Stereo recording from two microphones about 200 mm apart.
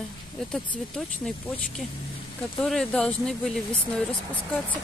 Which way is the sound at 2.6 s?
5° left (ahead or behind).